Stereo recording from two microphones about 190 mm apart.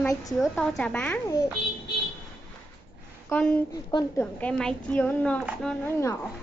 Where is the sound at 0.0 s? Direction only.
20° left (ahead or behind).